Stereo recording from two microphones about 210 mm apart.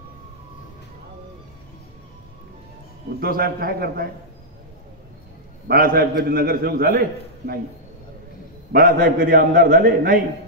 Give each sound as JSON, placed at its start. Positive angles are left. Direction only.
{"t": 3.2, "sound": "a man's voice", "side_deg": -45}
{"t": 5.7, "sound": "a man's voice", "side_deg": -45}
{"t": 8.7, "sound": "a man's voice", "side_deg": -45}